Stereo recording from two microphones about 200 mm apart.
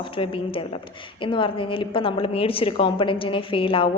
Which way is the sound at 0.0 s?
25° left (ahead or behind).